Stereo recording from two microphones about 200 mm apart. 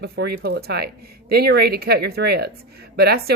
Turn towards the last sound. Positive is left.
turn(degrees=-50)  # may be behind; listen again after turning